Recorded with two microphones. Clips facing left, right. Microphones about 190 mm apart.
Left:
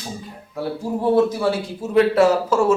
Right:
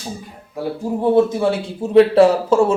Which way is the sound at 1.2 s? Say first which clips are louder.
Right 2 dB; 25° right (ahead or behind).